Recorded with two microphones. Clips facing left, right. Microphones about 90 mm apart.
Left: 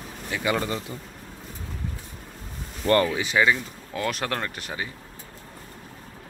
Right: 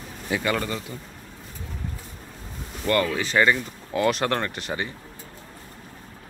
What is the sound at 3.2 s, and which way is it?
Speech, 5° left (ahead or behind).